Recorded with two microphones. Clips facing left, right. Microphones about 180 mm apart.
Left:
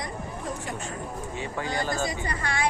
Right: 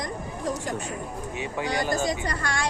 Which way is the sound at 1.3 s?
15° right (ahead or behind).